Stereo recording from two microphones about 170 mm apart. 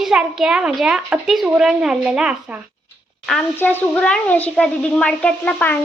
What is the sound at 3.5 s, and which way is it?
A woman's voice, 10° left (ahead or behind).